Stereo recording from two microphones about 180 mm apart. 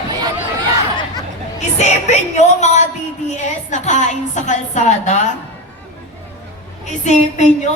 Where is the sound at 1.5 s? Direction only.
40° left (ahead or behind).